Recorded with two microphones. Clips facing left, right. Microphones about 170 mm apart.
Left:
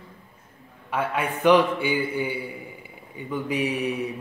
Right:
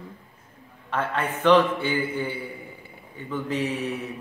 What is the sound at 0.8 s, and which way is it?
A man's voice, 10° left (ahead or behind).